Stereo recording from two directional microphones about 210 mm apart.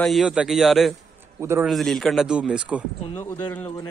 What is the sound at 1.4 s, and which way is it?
Speech, 10° right (ahead or behind).